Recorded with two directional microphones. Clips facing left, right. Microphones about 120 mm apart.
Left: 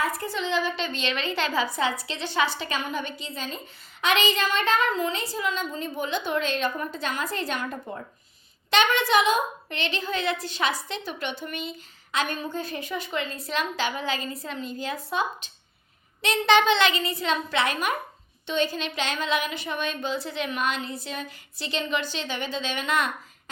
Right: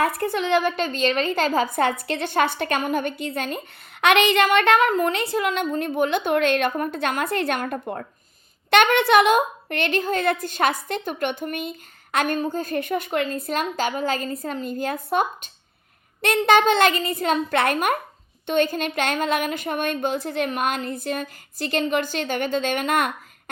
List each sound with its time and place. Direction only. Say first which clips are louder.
0.0 s a woman's voice: right 6 dB; 60° right (ahead or behind)